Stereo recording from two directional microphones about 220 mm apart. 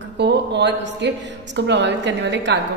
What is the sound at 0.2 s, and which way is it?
A woman's voice, 50° right (ahead or behind).